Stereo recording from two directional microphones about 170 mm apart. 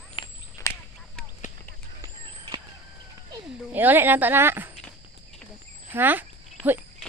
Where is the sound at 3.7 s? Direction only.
10° right (ahead or behind).